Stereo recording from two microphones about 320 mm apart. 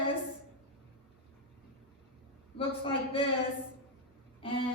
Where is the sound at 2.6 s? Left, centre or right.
Centre.